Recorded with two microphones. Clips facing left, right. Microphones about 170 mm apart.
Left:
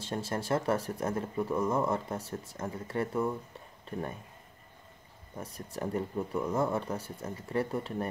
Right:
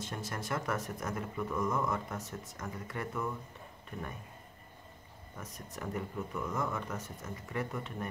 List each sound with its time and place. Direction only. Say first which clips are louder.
0.0 s speech: left 6 dB; 30° left (ahead or behind)
5.4 s speech: left 6 dB; 30° left (ahead or behind)